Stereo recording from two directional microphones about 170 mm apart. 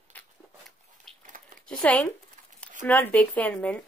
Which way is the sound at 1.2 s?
50° right (ahead or behind).